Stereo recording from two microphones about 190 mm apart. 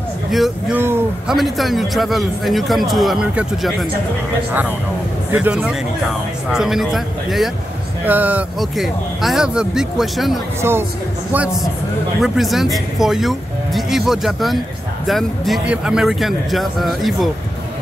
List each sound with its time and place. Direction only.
0.3 s a man's voice: centre (ahead or behind)
0.7 s speech: 10° right (ahead or behind)
1.3 s a man's voice: centre (ahead or behind)
5.3 s a man's voice: 10° right (ahead or behind)